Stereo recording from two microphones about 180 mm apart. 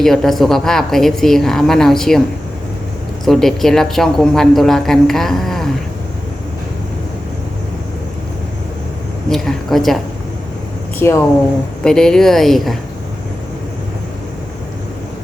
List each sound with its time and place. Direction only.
0.0 s speech: centre (ahead or behind)
3.2 s speech: centre (ahead or behind)
9.3 s speech: centre (ahead or behind)
11.0 s speech: 15° left (ahead or behind)